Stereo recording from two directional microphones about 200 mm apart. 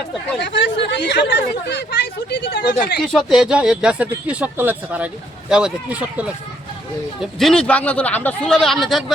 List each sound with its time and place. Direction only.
0.3 s speech: 60° left (ahead or behind)
3.0 s speech: centre (ahead or behind)